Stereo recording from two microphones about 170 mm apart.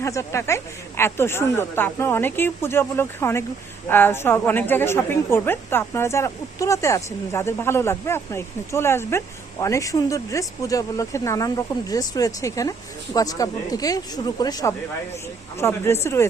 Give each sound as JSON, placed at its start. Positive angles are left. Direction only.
{"t": 0.0, "sound": "a woman's voice", "side_deg": 15}